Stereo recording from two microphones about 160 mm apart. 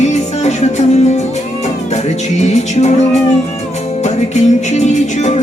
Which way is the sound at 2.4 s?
45° left (ahead or behind).